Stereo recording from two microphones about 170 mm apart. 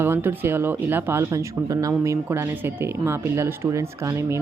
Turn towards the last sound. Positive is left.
turn(degrees=-15)  # may be behind; listen again after turning